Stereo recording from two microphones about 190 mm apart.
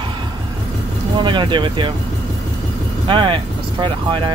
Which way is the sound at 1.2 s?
25° right (ahead or behind).